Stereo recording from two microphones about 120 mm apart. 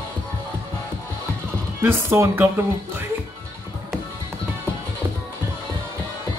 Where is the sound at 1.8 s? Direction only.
20° right (ahead or behind).